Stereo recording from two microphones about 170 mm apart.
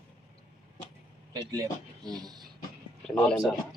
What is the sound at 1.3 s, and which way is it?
Speech, 20° right (ahead or behind).